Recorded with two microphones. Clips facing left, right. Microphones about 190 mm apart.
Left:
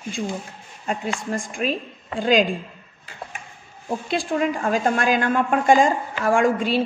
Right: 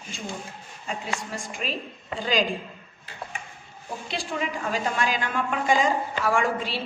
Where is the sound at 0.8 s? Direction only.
50° left (ahead or behind).